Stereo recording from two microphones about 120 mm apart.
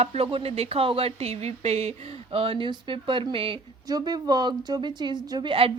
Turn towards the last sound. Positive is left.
turn(degrees=-45)  # may be behind; listen again after turning